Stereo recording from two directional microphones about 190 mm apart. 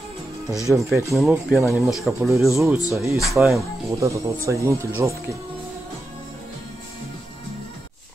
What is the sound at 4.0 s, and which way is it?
Speech, 15° right (ahead or behind).